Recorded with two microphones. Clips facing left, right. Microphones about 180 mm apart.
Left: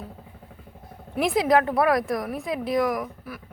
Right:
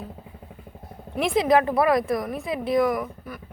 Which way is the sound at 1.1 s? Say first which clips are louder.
Right 1 dB; centre (ahead or behind).